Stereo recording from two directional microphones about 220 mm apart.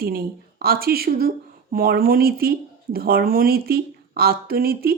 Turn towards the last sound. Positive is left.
turn(degrees=-45)  # may be behind; listen again after turning